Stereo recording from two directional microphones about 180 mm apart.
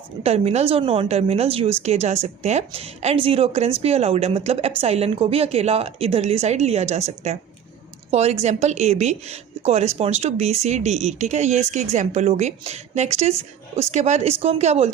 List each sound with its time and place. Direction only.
0.2 s a woman's voice: 35° right (ahead or behind)